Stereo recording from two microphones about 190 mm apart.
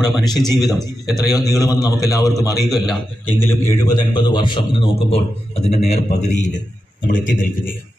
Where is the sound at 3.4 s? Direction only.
15° left (ahead or behind).